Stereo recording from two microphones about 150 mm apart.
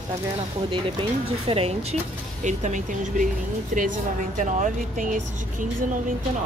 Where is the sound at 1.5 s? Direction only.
40° right (ahead or behind).